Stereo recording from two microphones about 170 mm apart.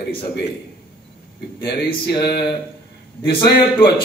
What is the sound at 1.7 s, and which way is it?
A man's voice, 70° left (ahead or behind).